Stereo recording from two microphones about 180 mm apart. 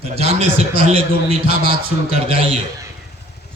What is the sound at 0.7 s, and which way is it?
Speech, 30° right (ahead or behind).